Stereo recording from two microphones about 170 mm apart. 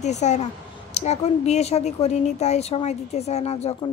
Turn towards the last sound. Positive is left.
turn(degrees=40)  # may be behind; listen again after turning